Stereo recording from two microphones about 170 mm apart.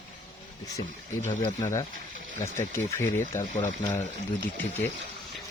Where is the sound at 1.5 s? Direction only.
20° left (ahead or behind).